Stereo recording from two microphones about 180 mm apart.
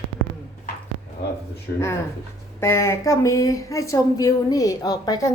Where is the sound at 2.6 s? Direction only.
15° left (ahead or behind).